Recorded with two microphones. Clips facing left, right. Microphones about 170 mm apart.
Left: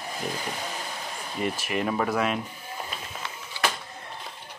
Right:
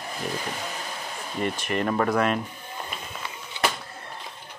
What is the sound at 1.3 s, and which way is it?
Speech, 5° left (ahead or behind).